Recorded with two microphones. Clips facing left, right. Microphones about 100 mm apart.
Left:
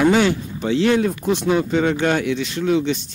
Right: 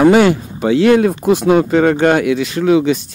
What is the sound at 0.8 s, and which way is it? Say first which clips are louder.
Speech: right 7 dB; 70° right (ahead or behind).